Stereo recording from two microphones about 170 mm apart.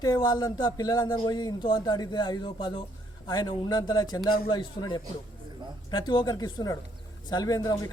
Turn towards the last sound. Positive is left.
turn(degrees=20)  # may be behind; listen again after turning